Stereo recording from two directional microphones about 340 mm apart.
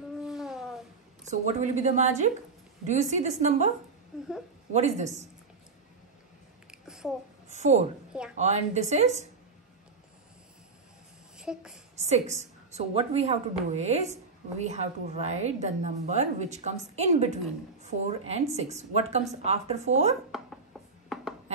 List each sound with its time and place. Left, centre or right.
0.2 s a sound: centre
1.3 s a woman's voice: centre
4.7 s a woman's voice: centre
6.7 s a sound: centre
7.4 s a woman's voice: centre
11.3 s speech: centre
12.0 s a woman's voice: centre
20.2 s chopping: centre
21.1 s a sound: centre